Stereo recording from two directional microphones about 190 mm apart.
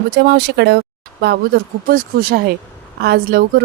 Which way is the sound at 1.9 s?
55° right (ahead or behind).